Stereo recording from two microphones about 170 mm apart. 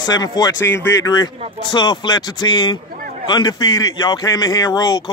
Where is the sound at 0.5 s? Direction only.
90° left.